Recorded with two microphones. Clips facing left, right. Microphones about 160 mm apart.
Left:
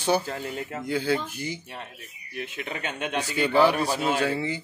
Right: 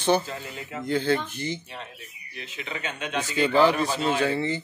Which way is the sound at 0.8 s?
10° left (ahead or behind).